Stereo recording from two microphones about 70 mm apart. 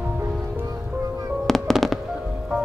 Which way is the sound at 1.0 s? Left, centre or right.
Right.